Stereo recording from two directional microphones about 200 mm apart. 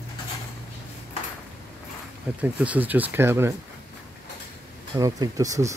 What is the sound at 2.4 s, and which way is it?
Speech, 5° right (ahead or behind).